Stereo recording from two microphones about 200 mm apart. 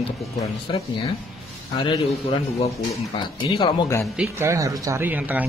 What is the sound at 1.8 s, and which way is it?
Speech, 25° left (ahead or behind).